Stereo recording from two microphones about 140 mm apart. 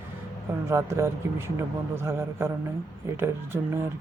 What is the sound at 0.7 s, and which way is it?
Speech, 20° right (ahead or behind).